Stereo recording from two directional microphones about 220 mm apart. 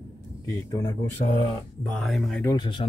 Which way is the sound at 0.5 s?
15° left (ahead or behind).